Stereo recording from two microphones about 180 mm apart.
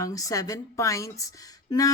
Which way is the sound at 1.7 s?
20° left (ahead or behind).